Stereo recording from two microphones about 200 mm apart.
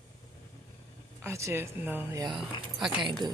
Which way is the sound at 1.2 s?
15° right (ahead or behind).